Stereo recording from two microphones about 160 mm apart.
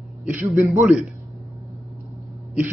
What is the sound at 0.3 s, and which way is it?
Speech, 15° right (ahead or behind).